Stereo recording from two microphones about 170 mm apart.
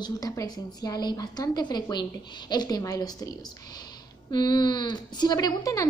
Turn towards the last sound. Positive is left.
turn(degrees=20)  # may be behind; listen again after turning